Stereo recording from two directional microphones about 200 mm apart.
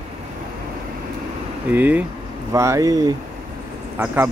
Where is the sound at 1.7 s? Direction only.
10° right (ahead or behind).